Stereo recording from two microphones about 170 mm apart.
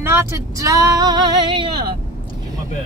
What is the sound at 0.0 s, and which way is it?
Speech, 15° right (ahead or behind).